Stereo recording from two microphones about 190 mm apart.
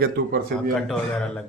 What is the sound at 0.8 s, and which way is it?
Speech, centre (ahead or behind).